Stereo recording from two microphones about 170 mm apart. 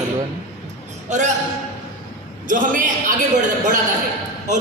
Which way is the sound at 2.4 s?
50° right (ahead or behind).